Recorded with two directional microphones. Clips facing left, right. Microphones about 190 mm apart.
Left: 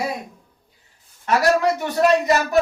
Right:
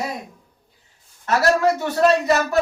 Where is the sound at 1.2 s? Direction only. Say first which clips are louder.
Even; 15° left (ahead or behind).